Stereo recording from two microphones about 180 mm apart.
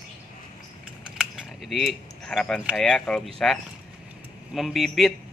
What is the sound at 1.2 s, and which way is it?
A man's voice, centre (ahead or behind).